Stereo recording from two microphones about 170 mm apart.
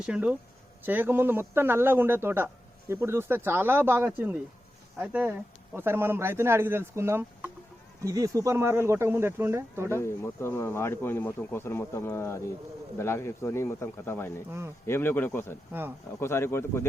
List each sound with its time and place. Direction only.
0.0 s speech: 5° right (ahead or behind)
10.0 s speech: 15° left (ahead or behind)